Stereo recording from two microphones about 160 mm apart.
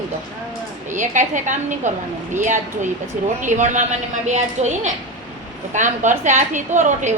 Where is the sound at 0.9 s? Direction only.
50° right (ahead or behind).